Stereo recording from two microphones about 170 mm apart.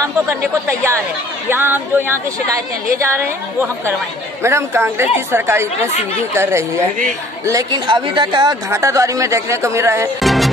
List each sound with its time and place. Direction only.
0.0 s a woman's voice: 15° right (ahead or behind)
10.2 s music: centre (ahead or behind)